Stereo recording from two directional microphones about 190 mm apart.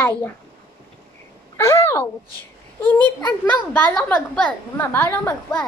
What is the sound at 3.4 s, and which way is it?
A woman's voice, 10° left (ahead or behind).